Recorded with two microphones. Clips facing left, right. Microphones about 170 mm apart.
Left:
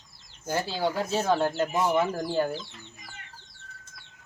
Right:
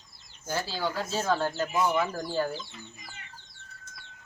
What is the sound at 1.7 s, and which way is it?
Speech, 40° left (ahead or behind).